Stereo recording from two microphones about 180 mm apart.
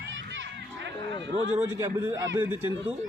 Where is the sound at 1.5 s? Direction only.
15° right (ahead or behind).